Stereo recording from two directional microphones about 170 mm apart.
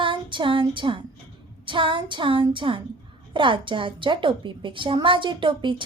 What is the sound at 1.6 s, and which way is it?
A woman's voice, 30° right (ahead or behind).